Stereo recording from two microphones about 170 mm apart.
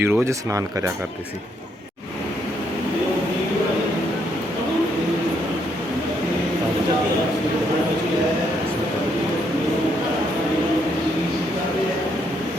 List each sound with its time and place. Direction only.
0.0 s speech: 15° right (ahead or behind)